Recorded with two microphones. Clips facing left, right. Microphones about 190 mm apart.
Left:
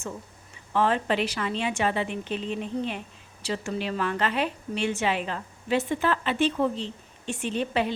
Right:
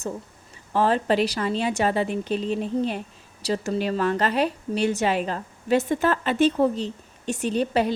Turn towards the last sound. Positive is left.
turn(degrees=-40)  # may be behind; listen again after turning